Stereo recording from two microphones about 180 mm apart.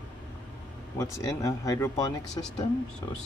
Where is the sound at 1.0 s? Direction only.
20° left (ahead or behind).